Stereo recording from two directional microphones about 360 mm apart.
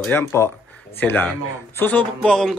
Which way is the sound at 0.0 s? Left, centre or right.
Centre.